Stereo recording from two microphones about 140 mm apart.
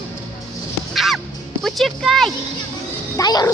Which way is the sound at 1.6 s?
Centre (ahead or behind).